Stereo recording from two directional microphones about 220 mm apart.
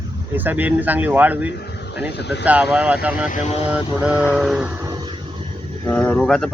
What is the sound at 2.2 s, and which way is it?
Speech, 50° left (ahead or behind).